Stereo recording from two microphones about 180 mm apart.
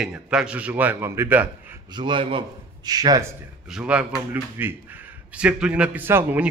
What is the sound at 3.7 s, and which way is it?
A man's voice, 5° right (ahead or behind).